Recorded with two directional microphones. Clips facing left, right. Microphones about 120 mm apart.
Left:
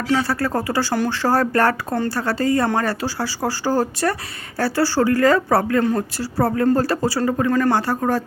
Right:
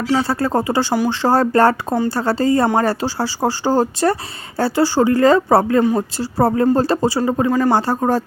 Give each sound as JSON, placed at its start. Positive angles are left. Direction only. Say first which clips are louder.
{"t": 0.2, "sound": "speech", "louder": "right 3 dB", "side_deg": -25}